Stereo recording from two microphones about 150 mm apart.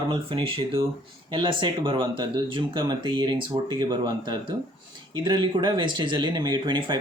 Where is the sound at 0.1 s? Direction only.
35° right (ahead or behind).